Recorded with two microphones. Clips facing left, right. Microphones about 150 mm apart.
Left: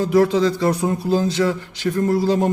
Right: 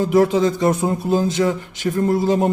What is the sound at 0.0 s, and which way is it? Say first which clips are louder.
A man's voice: right 1 dB; 20° right (ahead or behind).